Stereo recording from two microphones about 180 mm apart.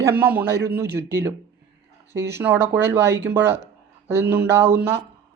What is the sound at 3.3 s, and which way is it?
Speech, 10° right (ahead or behind).